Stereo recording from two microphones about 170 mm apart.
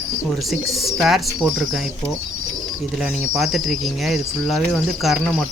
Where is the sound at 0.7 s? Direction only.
Centre (ahead or behind).